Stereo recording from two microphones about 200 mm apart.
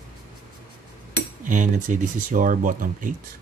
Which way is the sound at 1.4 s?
40° right (ahead or behind).